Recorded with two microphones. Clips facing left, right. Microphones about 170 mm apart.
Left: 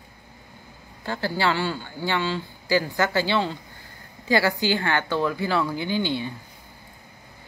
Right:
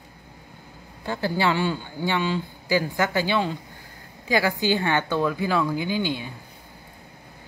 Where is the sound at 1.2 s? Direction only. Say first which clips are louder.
Right 1 dB; 20° right (ahead or behind).